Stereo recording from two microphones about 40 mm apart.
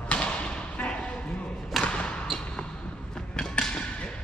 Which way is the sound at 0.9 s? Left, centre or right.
Left.